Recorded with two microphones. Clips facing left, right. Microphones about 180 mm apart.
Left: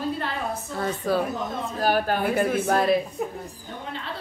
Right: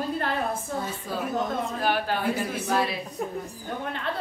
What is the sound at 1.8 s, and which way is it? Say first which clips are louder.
A woman's voice: left 5 dB; 45° left (ahead or behind).